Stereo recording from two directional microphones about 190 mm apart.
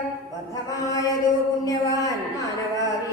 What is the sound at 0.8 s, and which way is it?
Mantra, 15° left (ahead or behind).